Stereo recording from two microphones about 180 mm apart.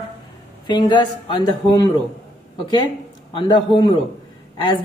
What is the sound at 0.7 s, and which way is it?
Speech, 25° left (ahead or behind).